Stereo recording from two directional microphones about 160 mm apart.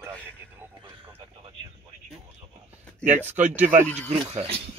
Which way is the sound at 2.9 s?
5° left (ahead or behind).